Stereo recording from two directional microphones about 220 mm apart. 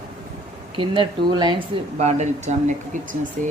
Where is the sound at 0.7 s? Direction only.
25° right (ahead or behind).